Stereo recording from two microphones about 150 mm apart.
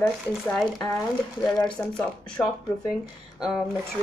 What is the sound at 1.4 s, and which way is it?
Speech, 5° left (ahead or behind).